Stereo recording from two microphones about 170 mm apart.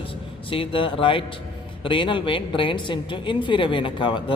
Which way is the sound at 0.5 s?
30° left (ahead or behind).